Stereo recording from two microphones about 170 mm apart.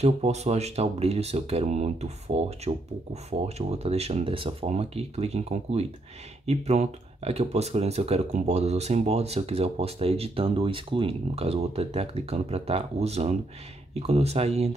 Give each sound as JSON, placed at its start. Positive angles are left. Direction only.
{"t": 0.0, "sound": "speech", "side_deg": -40}